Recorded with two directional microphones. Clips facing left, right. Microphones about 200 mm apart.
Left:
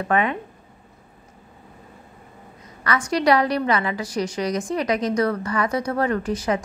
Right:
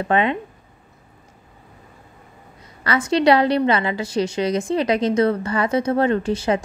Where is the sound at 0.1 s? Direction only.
25° right (ahead or behind).